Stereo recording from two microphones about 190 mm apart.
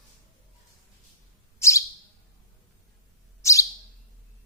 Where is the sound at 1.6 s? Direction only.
15° left (ahead or behind).